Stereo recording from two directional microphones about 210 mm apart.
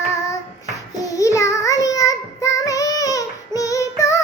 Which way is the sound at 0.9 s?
15° left (ahead or behind).